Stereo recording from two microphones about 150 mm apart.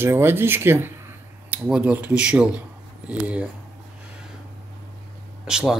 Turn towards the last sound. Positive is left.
turn(degrees=-5)  # may be behind; listen again after turning